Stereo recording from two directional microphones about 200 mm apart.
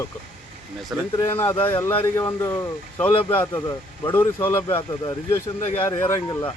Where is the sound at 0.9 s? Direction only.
5° right (ahead or behind).